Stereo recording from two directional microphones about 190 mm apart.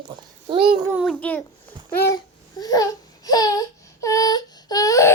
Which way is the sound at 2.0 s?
20° left (ahead or behind).